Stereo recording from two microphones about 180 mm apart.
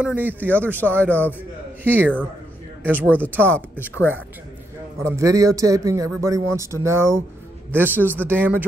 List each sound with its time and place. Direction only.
0.0 s a man's voice: 10° right (ahead or behind)
0.7 s speech: 10° left (ahead or behind)
1.9 s a man's voice: 10° right (ahead or behind)
3.8 s speech: 10° left (ahead or behind)
5.0 s a man's voice: 15° right (ahead or behind)